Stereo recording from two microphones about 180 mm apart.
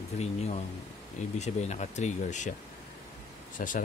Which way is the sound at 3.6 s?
50° left (ahead or behind).